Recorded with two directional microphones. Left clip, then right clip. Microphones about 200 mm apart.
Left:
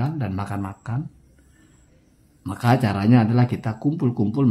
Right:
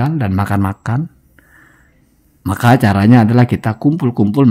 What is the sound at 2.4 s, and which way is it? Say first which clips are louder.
Speech: right 9 dB; 45° right (ahead or behind).